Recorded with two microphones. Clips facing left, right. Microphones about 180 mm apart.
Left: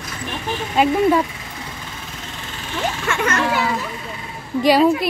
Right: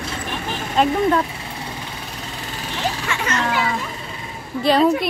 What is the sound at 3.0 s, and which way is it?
Speech, 55° left (ahead or behind).